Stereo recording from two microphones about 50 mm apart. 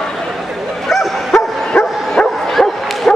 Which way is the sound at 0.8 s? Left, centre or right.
Centre.